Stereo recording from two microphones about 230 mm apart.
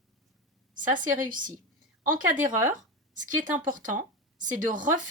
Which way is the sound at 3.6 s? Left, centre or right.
Right.